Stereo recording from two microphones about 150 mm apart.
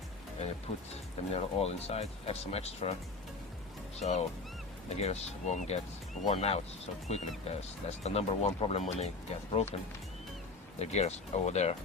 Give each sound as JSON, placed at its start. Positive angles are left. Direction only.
{"t": 1.3, "sound": "speech", "side_deg": 40}
{"t": 4.0, "sound": "speech", "side_deg": 45}
{"t": 10.8, "sound": "speech", "side_deg": 45}